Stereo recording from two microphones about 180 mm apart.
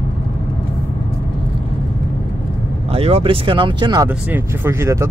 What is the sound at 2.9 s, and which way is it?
Speech, 35° right (ahead or behind).